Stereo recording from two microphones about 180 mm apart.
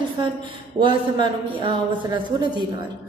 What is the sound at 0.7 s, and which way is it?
A woman's voice, 25° right (ahead or behind).